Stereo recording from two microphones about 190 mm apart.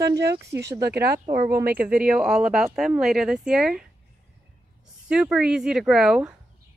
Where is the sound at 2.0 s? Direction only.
5° right (ahead or behind).